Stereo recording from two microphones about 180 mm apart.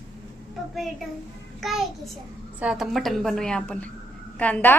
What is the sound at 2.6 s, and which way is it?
A woman's voice, 5° right (ahead or behind).